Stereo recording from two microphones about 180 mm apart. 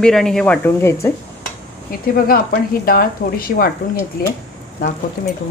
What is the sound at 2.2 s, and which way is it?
Speech, 55° left (ahead or behind).